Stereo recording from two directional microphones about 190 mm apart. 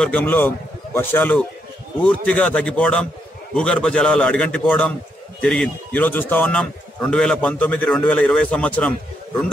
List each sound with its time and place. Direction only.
0.0 s a man's voice: 10° left (ahead or behind)